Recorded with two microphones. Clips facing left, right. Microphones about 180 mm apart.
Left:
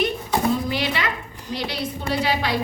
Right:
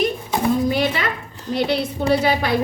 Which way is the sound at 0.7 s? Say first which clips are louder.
Right 4 dB; 50° right (ahead or behind).